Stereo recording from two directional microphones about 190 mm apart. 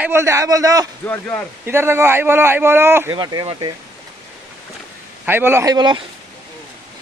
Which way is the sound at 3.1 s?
25° right (ahead or behind).